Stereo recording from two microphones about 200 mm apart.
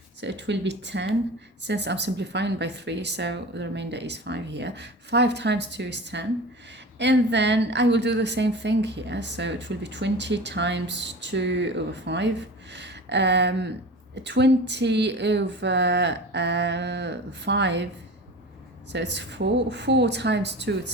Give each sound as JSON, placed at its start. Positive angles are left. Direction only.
{"t": 0.2, "sound": "a woman's voice", "side_deg": -60}
{"t": 12.7, "sound": "a sound", "side_deg": -60}
{"t": 14.3, "sound": "a woman's voice", "side_deg": -60}
{"t": 18.9, "sound": "a woman's voice", "side_deg": -60}